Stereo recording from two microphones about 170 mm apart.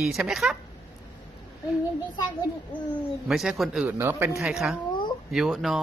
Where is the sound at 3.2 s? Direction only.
Centre (ahead or behind).